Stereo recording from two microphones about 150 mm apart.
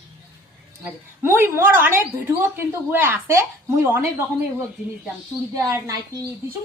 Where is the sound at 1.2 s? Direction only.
15° right (ahead or behind).